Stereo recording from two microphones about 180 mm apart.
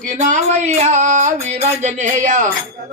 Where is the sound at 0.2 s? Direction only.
45° right (ahead or behind).